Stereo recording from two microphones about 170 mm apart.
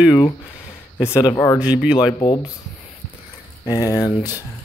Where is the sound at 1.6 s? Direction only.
5° right (ahead or behind).